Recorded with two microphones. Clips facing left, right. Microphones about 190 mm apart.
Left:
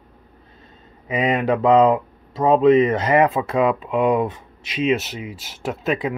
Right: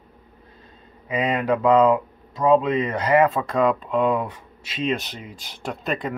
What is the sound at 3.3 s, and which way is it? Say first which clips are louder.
Speech: left 2 dB; 10° left (ahead or behind).